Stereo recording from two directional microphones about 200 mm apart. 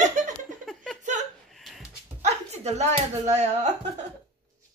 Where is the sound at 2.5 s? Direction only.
35° right (ahead or behind).